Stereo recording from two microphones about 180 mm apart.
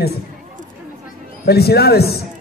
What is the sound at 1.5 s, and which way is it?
Speech, 60° left (ahead or behind).